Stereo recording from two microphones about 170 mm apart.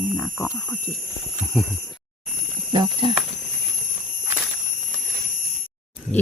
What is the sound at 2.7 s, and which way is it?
Speech, 30° right (ahead or behind).